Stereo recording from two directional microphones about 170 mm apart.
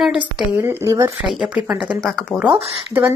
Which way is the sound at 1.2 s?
5° right (ahead or behind).